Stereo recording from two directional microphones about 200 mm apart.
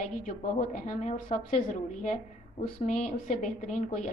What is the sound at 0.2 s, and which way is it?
A woman's voice, 40° left (ahead or behind).